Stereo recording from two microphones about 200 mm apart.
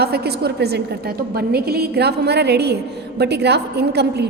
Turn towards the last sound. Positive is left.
turn(degrees=-55)  # may be behind; listen again after turning